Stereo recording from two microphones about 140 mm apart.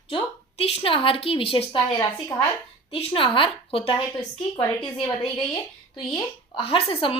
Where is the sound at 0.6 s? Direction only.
45° left (ahead or behind).